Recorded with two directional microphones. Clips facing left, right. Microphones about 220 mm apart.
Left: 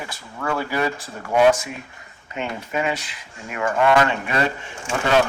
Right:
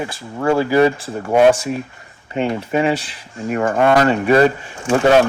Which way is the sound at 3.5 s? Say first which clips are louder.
Right 4 dB; 40° right (ahead or behind).